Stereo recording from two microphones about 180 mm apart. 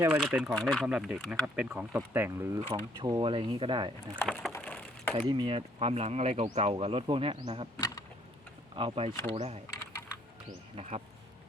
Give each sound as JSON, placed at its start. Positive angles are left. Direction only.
{"t": 0.0, "sound": "speech", "side_deg": -10}
{"t": 2.6, "sound": "speech", "side_deg": -25}
{"t": 4.2, "sound": "a sound", "side_deg": 5}
{"t": 5.1, "sound": "speech", "side_deg": -30}
{"t": 7.8, "sound": "insect", "side_deg": 20}
{"t": 8.7, "sound": "speech", "side_deg": -30}
{"t": 10.8, "sound": "speech", "side_deg": -40}